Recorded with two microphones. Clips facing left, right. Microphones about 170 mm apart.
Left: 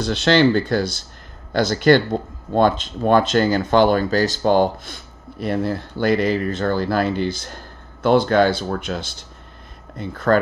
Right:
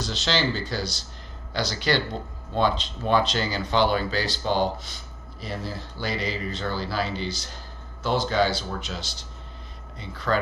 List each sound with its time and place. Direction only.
0.0 s speech: 55° left (ahead or behind)